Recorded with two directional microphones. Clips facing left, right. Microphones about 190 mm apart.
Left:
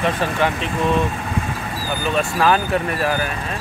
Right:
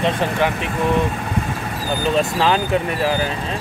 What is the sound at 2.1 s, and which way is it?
Speech, 20° right (ahead or behind).